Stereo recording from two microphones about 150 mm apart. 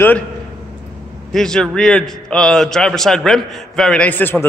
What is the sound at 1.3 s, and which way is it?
A man's voice, 5° left (ahead or behind).